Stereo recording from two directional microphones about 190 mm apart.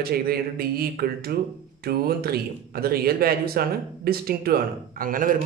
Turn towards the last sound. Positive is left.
turn(degrees=-45)  # may be behind; listen again after turning